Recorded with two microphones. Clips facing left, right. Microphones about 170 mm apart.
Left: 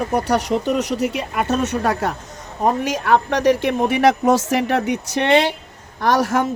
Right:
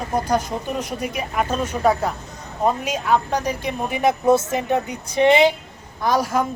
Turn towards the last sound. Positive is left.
turn(degrees=75)  # may be behind; listen again after turning